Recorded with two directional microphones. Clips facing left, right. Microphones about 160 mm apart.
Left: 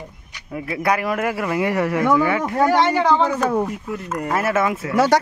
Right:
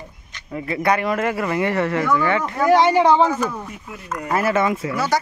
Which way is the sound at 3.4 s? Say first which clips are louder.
Left 8 dB; 55° left (ahead or behind).